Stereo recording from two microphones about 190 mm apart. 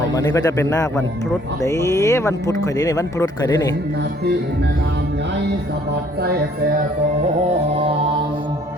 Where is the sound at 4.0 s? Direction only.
60° right (ahead or behind).